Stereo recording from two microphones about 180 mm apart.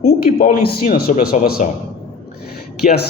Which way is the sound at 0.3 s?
55° left (ahead or behind).